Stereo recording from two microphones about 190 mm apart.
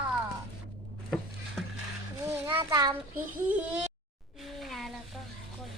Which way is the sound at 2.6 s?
20° right (ahead or behind).